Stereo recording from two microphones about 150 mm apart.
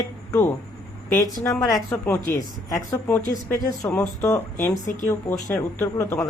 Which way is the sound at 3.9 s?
10° left (ahead or behind).